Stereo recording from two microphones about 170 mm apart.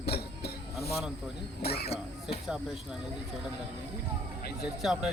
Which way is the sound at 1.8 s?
35° left (ahead or behind).